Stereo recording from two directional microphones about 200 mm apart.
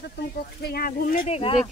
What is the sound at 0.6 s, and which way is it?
Speech, 50° left (ahead or behind).